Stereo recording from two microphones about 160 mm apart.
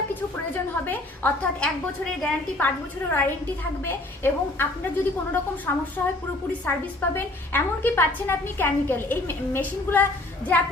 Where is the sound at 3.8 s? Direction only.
15° left (ahead or behind).